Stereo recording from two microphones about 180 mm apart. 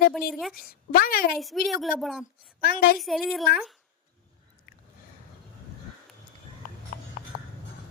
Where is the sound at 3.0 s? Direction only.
Centre (ahead or behind).